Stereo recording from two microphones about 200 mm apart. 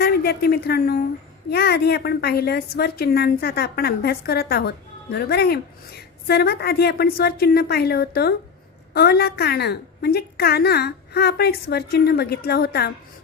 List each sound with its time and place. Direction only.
0.0 s a woman's voice: 50° left (ahead or behind)